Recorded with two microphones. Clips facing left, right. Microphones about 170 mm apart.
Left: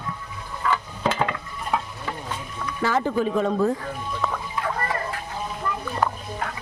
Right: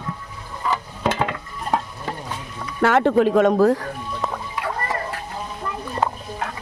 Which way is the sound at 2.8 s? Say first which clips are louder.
Right 7 dB; 70° right (ahead or behind).